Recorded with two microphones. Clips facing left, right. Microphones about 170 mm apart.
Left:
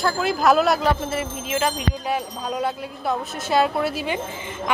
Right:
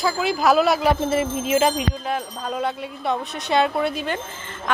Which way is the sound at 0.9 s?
25° right (ahead or behind).